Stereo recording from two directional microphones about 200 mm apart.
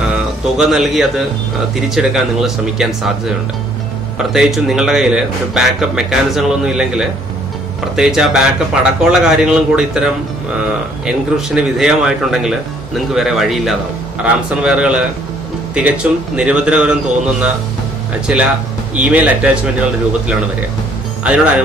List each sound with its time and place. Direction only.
0.6 s speech: centre (ahead or behind)
18.2 s speech: 5° right (ahead or behind)
21.2 s speech: 5° right (ahead or behind)